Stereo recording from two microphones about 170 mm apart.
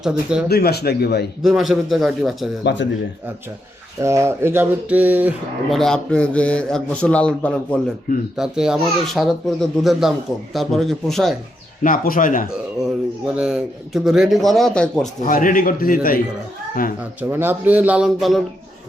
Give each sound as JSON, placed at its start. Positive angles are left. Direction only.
{"t": 0.0, "sound": "speech", "side_deg": -5}
{"t": 0.4, "sound": "speech", "side_deg": 70}
{"t": 1.4, "sound": "speech", "side_deg": 0}
{"t": 4.0, "sound": "speech", "side_deg": -15}
{"t": 5.7, "sound": "speech", "side_deg": 0}
{"t": 11.8, "sound": "speech", "side_deg": 55}
{"t": 12.5, "sound": "speech", "side_deg": -5}
{"t": 15.2, "sound": "a man's voice", "side_deg": 50}
{"t": 17.0, "sound": "speech", "side_deg": -10}